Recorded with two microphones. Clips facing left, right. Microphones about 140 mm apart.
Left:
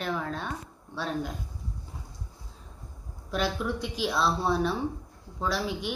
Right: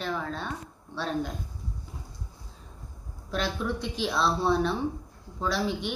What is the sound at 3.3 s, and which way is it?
Speech, 5° left (ahead or behind).